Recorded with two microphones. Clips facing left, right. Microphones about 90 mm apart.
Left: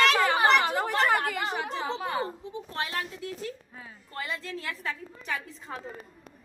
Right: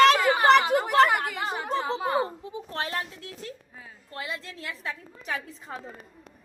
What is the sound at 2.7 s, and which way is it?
Speech, 35° right (ahead or behind).